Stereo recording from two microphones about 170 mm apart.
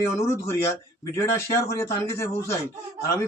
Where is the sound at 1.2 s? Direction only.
15° left (ahead or behind).